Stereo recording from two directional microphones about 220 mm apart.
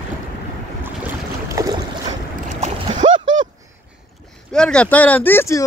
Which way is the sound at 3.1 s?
60° right (ahead or behind).